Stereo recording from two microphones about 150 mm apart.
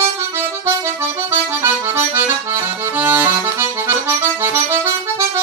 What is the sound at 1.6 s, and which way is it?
Accordion, 15° right (ahead or behind).